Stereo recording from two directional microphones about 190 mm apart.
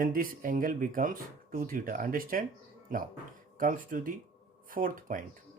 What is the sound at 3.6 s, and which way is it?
Speech, 45° right (ahead or behind).